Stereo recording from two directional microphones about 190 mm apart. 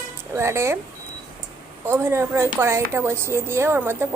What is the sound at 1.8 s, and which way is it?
A woman's voice, 15° right (ahead or behind).